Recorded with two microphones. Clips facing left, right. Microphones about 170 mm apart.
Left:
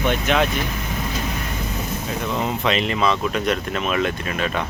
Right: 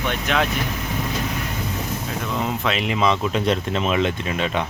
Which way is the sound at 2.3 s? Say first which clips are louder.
Left 2 dB; centre (ahead or behind).